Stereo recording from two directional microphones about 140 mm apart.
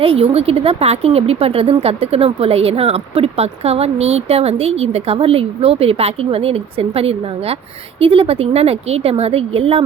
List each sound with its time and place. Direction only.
0.0 s a woman's voice: 40° right (ahead or behind)